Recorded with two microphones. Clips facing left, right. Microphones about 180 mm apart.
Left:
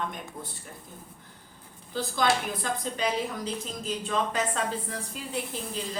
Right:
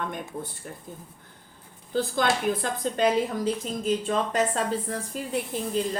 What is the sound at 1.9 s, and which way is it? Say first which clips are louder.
A woman's voice: right 2 dB; 55° right (ahead or behind).